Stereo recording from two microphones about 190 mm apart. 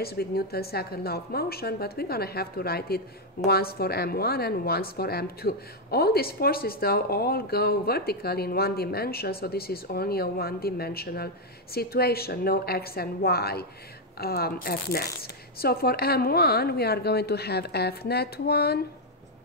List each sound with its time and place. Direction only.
0.0 s a woman's voice: 55° left (ahead or behind)